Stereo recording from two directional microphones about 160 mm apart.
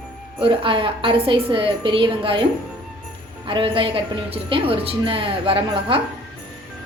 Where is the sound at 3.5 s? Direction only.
30° right (ahead or behind).